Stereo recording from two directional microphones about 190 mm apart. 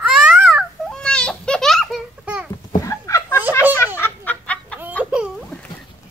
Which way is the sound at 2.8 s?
15° left (ahead or behind).